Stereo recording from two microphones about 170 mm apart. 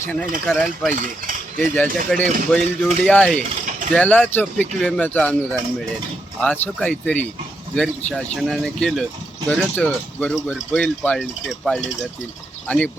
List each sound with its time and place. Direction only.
0.1 s speech: 5° left (ahead or behind)
0.9 s a sound: 50° right (ahead or behind)
1.7 s speech: 10° left (ahead or behind)